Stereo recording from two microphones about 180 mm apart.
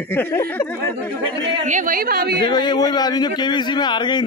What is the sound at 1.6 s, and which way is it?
Speech, 45° right (ahead or behind).